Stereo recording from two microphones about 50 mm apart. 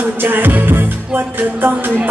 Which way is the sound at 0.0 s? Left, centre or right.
Right.